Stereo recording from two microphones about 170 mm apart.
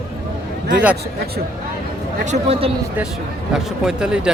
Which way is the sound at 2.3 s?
35° right (ahead or behind).